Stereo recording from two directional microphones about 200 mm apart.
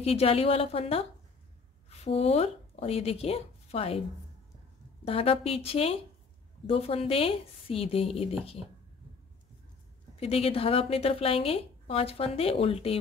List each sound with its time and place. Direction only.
0.0 s a woman's voice: 30° left (ahead or behind)
5.0 s a woman's voice: 30° left (ahead or behind)
10.1 s a woman's voice: 30° left (ahead or behind)